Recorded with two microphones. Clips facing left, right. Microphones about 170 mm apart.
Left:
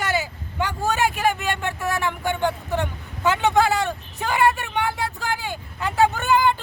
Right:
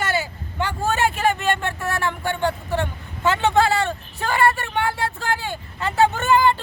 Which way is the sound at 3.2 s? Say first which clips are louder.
Right 1 dB; 15° left (ahead or behind).